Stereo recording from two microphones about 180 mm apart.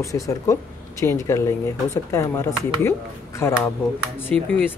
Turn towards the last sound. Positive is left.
turn(degrees=10)  # may be behind; listen again after turning